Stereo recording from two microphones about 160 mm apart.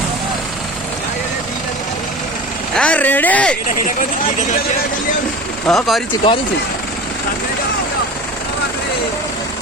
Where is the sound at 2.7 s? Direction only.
5° left (ahead or behind).